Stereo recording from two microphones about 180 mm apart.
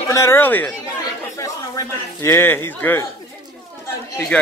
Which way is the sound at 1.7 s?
15° left (ahead or behind).